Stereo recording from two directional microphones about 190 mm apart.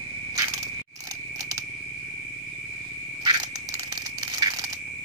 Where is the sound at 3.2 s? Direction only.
25° right (ahead or behind).